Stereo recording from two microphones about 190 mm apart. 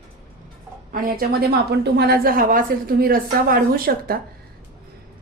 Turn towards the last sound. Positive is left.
turn(degrees=-50)  # may be behind; listen again after turning